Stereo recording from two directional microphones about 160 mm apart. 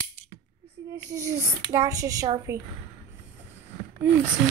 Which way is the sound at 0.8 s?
25° right (ahead or behind).